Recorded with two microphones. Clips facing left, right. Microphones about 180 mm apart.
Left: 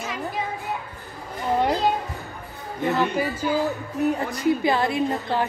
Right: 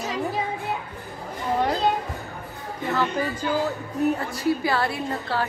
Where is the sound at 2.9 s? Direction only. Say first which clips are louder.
Left 2 dB; 15° left (ahead or behind).